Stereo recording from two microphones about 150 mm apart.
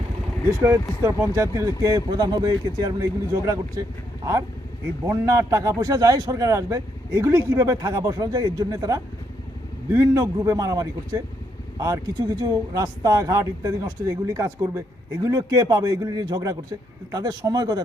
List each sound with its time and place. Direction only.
0.6 s speech: 15° right (ahead or behind)
5.0 s speech: 20° right (ahead or behind)